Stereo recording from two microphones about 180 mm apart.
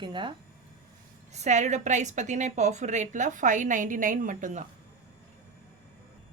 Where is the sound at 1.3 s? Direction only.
40° right (ahead or behind).